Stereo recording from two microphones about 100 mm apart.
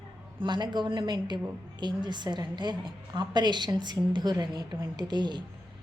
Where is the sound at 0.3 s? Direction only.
50° right (ahead or behind).